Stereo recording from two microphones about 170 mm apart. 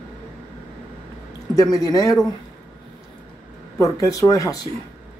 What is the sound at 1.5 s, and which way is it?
Speech, 20° left (ahead or behind).